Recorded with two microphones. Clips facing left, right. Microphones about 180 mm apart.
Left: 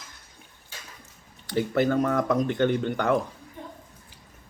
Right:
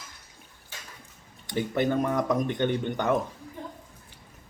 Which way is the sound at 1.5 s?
20° right (ahead or behind).